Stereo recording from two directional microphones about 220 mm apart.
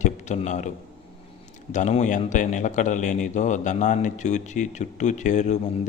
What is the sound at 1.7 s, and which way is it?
A man's voice, 30° left (ahead or behind).